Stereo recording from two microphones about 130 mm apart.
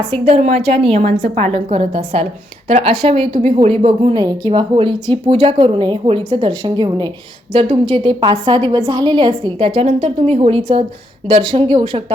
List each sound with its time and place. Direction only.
0.3 s speech: 60° right (ahead or behind)
4.2 s a woman's voice: 35° right (ahead or behind)